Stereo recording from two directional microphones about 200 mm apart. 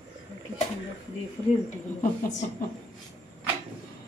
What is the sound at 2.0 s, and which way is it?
Speech, 35° left (ahead or behind).